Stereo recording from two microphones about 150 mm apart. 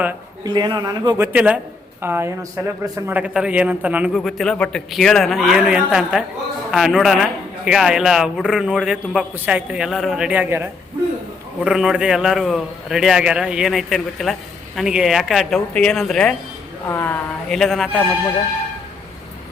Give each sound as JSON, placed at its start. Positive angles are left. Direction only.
{"t": 0.4, "sound": "a man's voice", "side_deg": -30}
{"t": 1.2, "sound": "speech", "side_deg": -10}
{"t": 3.1, "sound": "a man's voice", "side_deg": -10}
{"t": 17.5, "sound": "a man's voice", "side_deg": 0}